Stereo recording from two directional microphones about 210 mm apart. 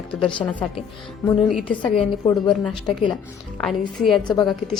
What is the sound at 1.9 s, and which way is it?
Speech, 20° left (ahead or behind).